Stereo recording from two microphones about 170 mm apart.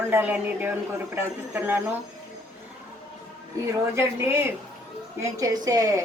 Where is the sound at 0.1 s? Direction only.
10° right (ahead or behind).